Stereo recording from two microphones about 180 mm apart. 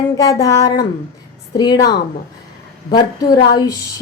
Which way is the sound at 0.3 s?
20° left (ahead or behind).